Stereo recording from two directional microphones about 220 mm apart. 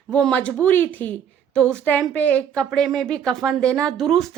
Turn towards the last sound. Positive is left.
turn(degrees=0)  # may be behind; listen again after turning